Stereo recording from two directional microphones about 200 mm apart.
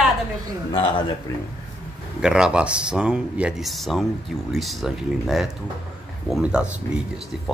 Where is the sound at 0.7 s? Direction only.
25° left (ahead or behind).